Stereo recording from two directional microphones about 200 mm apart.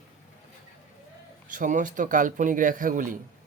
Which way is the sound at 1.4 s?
40° right (ahead or behind).